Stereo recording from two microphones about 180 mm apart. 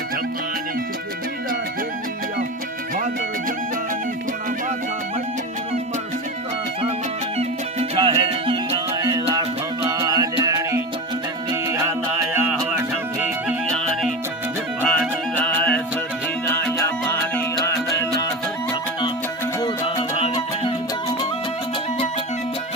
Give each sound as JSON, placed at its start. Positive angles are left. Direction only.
{"t": 7.3, "sound": "music", "side_deg": -30}
{"t": 13.7, "sound": "music", "side_deg": 5}
{"t": 20.1, "sound": "music", "side_deg": 35}